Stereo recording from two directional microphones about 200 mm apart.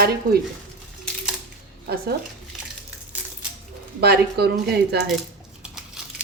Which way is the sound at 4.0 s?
55° right (ahead or behind).